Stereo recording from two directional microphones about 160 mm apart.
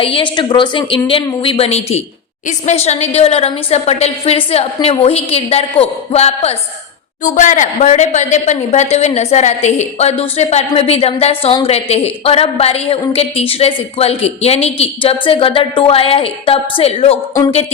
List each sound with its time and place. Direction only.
0.0 s a woman's voice: 35° left (ahead or behind)
7.3 s a woman's voice: 55° left (ahead or behind)